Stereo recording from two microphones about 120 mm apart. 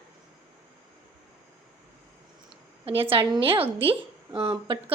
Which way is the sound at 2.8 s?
50° right (ahead or behind).